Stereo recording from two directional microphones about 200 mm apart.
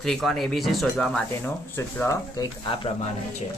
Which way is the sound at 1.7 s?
15° left (ahead or behind).